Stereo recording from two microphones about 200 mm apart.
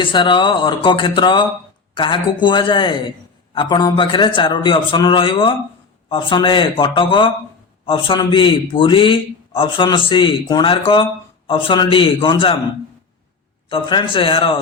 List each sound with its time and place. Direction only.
0.0 s a man's voice: 25° left (ahead or behind)
13.7 s a man's voice: 25° left (ahead or behind)